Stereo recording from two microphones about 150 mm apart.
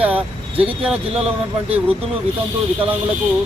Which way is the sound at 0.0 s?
10° right (ahead or behind).